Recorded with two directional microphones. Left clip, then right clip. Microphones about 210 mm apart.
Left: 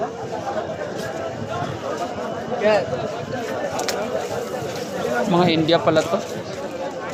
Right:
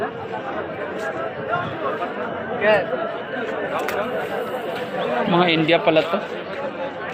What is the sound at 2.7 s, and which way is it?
Speech, 60° left (ahead or behind).